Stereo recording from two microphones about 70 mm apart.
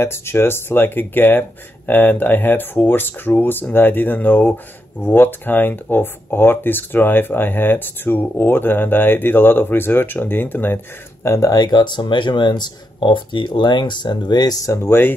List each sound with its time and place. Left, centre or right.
0.0 s speech: left
11.2 s speech: left
11.5 s speech: left
14.7 s speech: left